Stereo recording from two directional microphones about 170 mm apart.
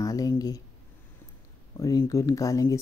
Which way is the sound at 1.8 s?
20° left (ahead or behind).